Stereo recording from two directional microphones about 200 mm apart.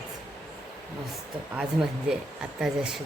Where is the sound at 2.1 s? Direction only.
5° right (ahead or behind).